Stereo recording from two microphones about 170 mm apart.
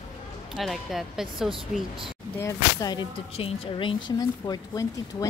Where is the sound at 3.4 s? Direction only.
35° left (ahead or behind).